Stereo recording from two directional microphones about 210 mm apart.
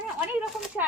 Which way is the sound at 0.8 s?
10° right (ahead or behind).